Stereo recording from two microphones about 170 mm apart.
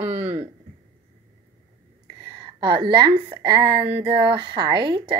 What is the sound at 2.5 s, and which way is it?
A woman's voice, 30° right (ahead or behind).